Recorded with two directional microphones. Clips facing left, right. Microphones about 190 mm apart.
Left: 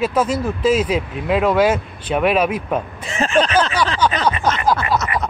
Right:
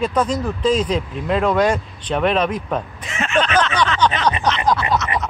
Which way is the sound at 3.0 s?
35° left (ahead or behind).